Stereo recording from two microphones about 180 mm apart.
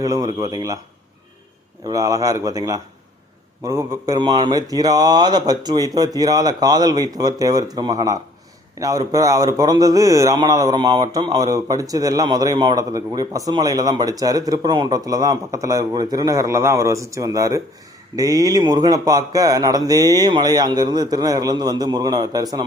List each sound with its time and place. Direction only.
0.0 s a man's voice: 20° right (ahead or behind)
1.9 s a man's voice: 20° right (ahead or behind)